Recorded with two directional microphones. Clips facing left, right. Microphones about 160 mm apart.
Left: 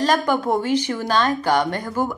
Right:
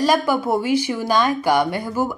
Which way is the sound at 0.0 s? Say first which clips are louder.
Right 1 dB; 10° right (ahead or behind).